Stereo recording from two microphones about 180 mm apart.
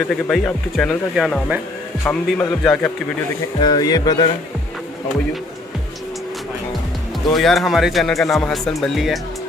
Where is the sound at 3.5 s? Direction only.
25° left (ahead or behind).